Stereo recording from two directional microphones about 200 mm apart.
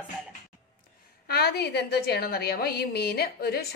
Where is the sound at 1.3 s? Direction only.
55° left (ahead or behind).